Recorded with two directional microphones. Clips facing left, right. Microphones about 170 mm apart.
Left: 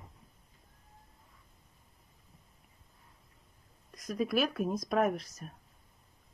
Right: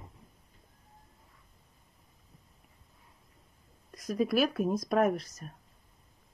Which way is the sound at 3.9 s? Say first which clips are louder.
Right 3 dB; centre (ahead or behind).